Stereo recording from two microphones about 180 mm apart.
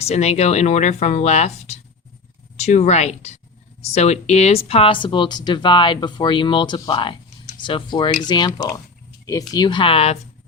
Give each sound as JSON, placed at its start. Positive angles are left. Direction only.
{"t": 0.0, "sound": "speech", "side_deg": 35}